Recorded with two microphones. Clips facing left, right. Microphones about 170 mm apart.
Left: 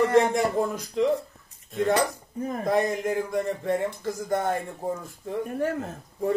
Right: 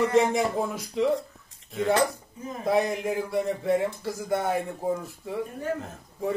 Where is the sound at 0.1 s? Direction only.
5° right (ahead or behind).